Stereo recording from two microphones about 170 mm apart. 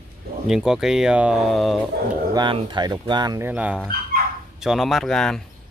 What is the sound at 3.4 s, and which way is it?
Speech, 10° right (ahead or behind).